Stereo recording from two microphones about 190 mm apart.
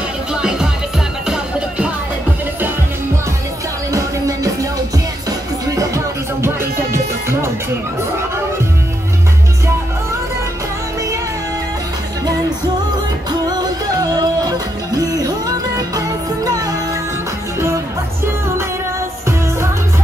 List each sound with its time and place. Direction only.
0.3 s music: 5° right (ahead or behind)
3.9 s music: 15° right (ahead or behind)
13.5 s music: 20° right (ahead or behind)